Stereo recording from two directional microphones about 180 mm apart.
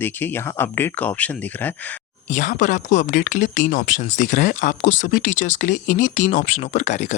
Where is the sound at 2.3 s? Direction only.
45° left (ahead or behind).